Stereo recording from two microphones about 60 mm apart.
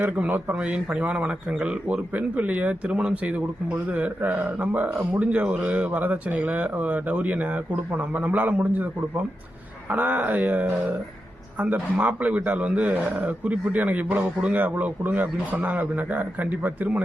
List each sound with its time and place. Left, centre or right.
0.2 s a man's voice: right